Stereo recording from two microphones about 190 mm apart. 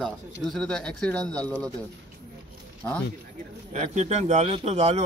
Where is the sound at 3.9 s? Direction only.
35° right (ahead or behind).